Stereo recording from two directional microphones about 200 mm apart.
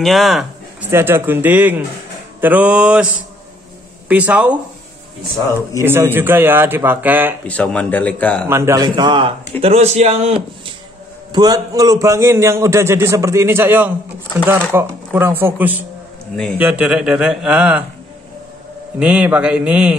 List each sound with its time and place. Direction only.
0.0 s a man's voice: centre (ahead or behind)
4.1 s a man's voice: 10° right (ahead or behind)
5.8 s a man's voice: 10° right (ahead or behind)
7.4 s a man's voice: 5° left (ahead or behind)
8.5 s a man's voice: 15° right (ahead or behind); by 10.7 s 30° right (ahead or behind)
11.3 s a man's voice: 20° right (ahead or behind)
18.9 s a man's voice: 5° right (ahead or behind)